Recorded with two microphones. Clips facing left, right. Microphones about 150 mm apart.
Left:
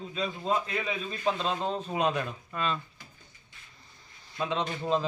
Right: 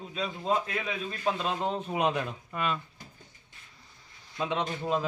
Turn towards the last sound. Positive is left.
turn(degrees=-10)  # may be behind; listen again after turning